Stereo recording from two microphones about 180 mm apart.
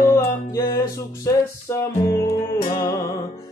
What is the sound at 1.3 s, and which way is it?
Music, 15° left (ahead or behind).